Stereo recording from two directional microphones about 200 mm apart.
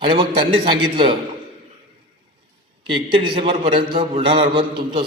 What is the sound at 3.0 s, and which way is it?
A man's voice, 25° right (ahead or behind).